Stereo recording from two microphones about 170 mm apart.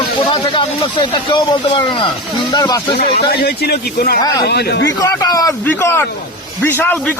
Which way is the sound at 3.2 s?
65° left (ahead or behind).